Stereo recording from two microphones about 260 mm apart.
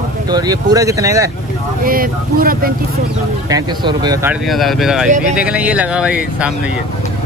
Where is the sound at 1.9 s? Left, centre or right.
Right.